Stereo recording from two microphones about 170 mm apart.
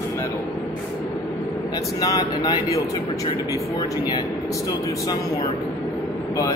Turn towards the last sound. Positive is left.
turn(degrees=20)  # may be behind; listen again after turning